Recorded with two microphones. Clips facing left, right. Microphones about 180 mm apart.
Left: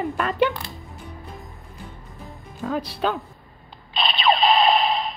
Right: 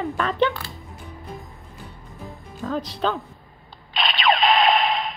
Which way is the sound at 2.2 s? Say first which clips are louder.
Even; 5° left (ahead or behind).